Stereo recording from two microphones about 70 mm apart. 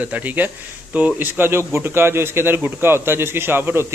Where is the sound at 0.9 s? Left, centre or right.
Right.